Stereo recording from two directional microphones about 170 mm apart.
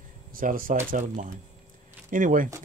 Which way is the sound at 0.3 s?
55° right (ahead or behind).